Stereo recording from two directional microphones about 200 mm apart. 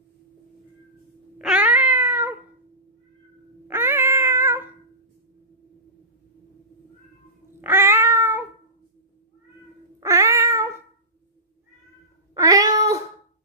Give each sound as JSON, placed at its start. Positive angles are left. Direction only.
{"t": 1.4, "sound": "cat", "side_deg": -5}
{"t": 3.6, "sound": "cat", "side_deg": -10}
{"t": 7.6, "sound": "cat", "side_deg": -10}
{"t": 9.9, "sound": "cat", "side_deg": -15}
{"t": 12.4, "sound": "cat", "side_deg": -15}